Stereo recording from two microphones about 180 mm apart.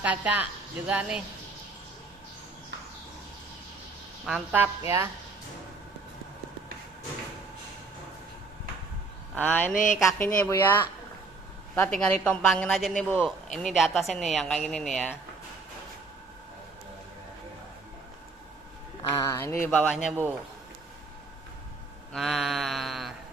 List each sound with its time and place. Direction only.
0.0 s speech: 10° right (ahead or behind)
4.3 s speech: 10° right (ahead or behind)
9.3 s speech: 10° left (ahead or behind)
19.0 s speech: 15° left (ahead or behind)
20.1 s speech: 10° right (ahead or behind)
22.1 s speech: centre (ahead or behind)